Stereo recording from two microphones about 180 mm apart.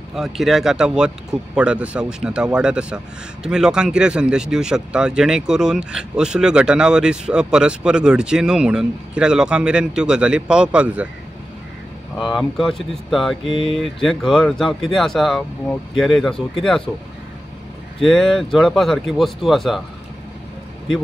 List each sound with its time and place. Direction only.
0.1 s speech: centre (ahead or behind)
12.2 s speech: centre (ahead or behind)
13.5 s speech: 30° left (ahead or behind)
13.7 s speech: centre (ahead or behind)
18.0 s speech: centre (ahead or behind)